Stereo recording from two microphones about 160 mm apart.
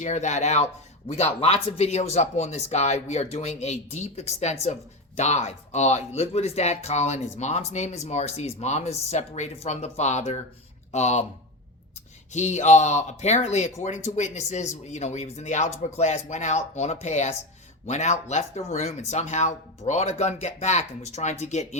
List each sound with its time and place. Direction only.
0.0 s speech: 45° left (ahead or behind)
12.3 s speech: 45° left (ahead or behind)